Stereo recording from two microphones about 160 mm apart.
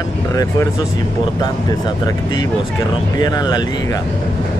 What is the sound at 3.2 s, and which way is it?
Speech, 25° left (ahead or behind).